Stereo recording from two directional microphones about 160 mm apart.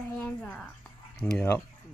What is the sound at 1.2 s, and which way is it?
Speech, 25° left (ahead or behind).